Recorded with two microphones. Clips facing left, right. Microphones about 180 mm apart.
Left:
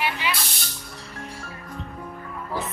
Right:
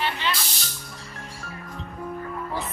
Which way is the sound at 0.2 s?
10° left (ahead or behind).